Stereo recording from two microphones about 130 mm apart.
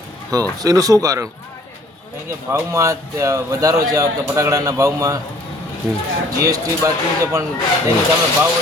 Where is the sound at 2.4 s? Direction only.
20° right (ahead or behind).